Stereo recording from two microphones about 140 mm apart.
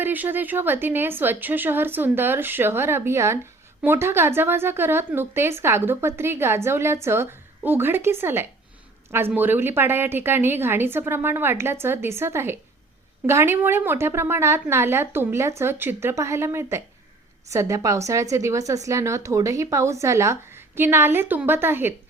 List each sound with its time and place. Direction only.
0.0 s a woman's voice: 15° right (ahead or behind)